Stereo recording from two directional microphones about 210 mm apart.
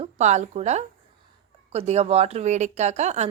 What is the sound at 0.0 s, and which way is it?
Speech, 35° right (ahead or behind).